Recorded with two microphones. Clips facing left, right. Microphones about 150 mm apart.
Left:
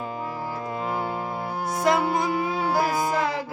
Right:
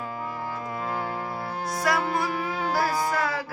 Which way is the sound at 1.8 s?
20° left (ahead or behind).